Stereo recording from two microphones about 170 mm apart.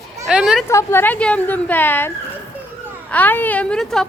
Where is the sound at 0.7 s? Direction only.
15° left (ahead or behind).